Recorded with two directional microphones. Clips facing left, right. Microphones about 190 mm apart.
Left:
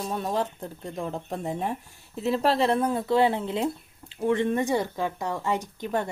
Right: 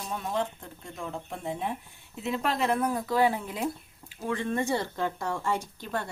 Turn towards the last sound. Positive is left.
turn(degrees=15)  # may be behind; listen again after turning